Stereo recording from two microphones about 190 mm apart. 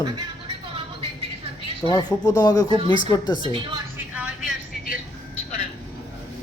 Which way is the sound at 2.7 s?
30° right (ahead or behind).